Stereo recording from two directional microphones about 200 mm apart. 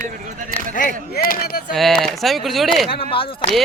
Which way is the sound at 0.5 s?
45° left (ahead or behind).